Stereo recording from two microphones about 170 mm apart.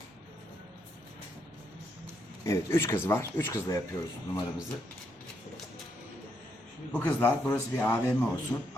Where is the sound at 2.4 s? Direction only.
15° left (ahead or behind).